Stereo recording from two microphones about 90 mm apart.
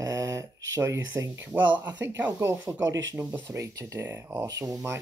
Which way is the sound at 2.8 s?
45° right (ahead or behind).